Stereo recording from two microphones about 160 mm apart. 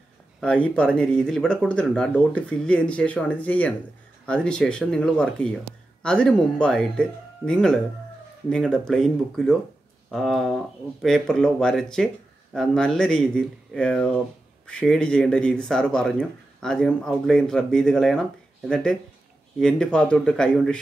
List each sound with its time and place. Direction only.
0.4 s speech: 5° left (ahead or behind)